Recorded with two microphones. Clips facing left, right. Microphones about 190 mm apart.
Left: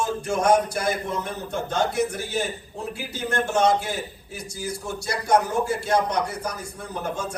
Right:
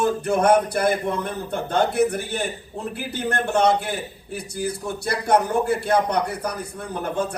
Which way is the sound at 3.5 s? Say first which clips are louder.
Right 2 dB; 60° right (ahead or behind).